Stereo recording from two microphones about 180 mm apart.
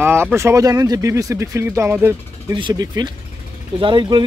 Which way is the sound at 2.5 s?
25° right (ahead or behind).